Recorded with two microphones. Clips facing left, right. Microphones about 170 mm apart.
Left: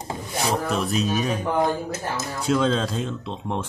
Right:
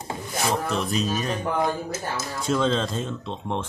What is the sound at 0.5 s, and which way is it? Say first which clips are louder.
Speech: left 3 dB; centre (ahead or behind).